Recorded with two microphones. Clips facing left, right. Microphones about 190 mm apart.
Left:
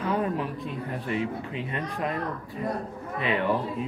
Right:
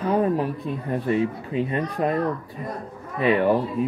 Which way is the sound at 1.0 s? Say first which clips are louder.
Right 6 dB; 35° right (ahead or behind).